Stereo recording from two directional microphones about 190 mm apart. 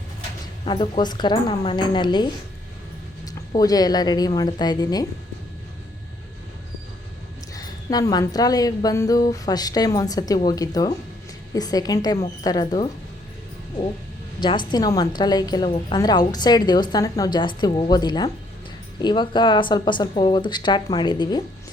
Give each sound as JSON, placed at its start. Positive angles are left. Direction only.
{"t": 0.6, "sound": "a woman's voice", "side_deg": 25}
{"t": 7.5, "sound": "a woman's voice", "side_deg": 20}
{"t": 14.7, "sound": "a woman's voice", "side_deg": 20}